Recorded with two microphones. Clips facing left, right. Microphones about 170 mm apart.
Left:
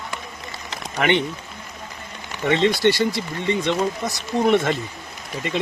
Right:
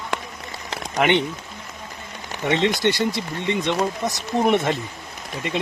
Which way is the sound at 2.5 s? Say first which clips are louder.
Left 2 dB; 20° right (ahead or behind).